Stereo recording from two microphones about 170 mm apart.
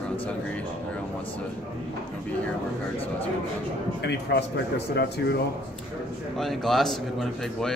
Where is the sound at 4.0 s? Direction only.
90° left.